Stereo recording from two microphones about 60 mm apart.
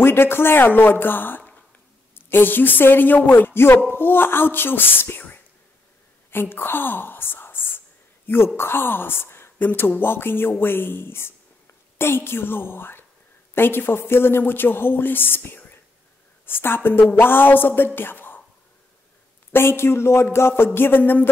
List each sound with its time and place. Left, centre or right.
0.0 s a woman's voice: left
19.5 s a woman's voice: left